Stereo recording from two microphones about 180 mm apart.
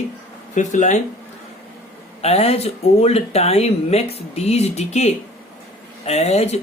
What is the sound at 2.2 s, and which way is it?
Speech, 35° left (ahead or behind).